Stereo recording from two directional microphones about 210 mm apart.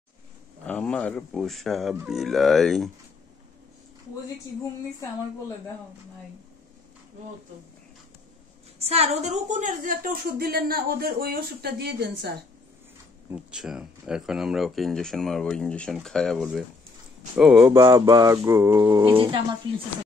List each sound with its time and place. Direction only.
0.7 s speech: 5° left (ahead or behind)
8.7 s a woman's voice: 30° right (ahead or behind); by 12.4 s 50° right (ahead or behind)
13.3 s speech: 5° right (ahead or behind)
17.6 s mantra: 15° right (ahead or behind)